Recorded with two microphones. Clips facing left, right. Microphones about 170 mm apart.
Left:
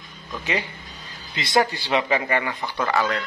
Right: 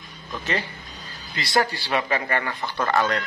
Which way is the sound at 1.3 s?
20° left (ahead or behind).